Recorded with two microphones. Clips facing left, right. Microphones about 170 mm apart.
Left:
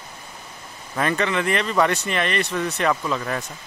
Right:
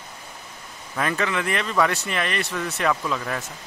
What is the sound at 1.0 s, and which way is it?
Speech, centre (ahead or behind).